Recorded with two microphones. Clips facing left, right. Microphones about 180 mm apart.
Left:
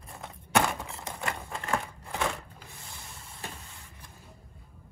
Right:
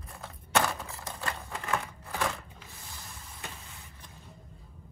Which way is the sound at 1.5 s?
30° left (ahead or behind).